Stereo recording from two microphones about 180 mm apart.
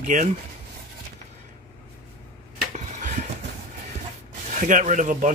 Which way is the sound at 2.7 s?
45° right (ahead or behind).